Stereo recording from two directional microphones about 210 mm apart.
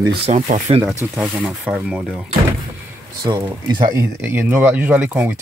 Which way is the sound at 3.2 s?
20° right (ahead or behind).